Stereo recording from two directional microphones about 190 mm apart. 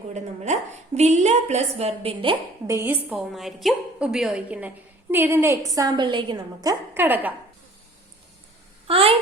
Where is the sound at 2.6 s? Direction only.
15° right (ahead or behind).